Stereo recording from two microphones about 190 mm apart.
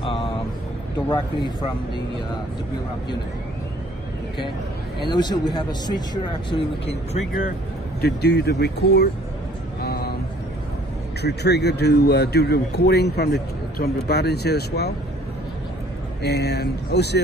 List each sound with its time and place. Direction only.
0.0 s vehicle: 30° left (ahead or behind)
5.0 s speech: 20° left (ahead or behind)
6.5 s speech: 35° left (ahead or behind)
8.0 s a man's voice: 60° left (ahead or behind)
9.8 s a sound: 55° left (ahead or behind)
11.2 s a man's voice: 60° left (ahead or behind)
16.2 s a man's voice: 60° left (ahead or behind)